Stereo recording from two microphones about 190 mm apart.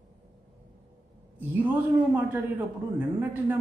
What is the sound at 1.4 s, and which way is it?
A man's voice, 10° right (ahead or behind).